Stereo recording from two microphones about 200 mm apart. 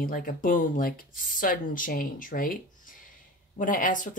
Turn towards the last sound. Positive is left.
turn(degrees=40)  # may be behind; listen again after turning